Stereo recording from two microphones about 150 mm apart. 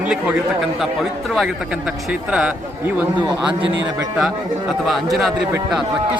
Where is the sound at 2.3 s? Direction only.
5° right (ahead or behind).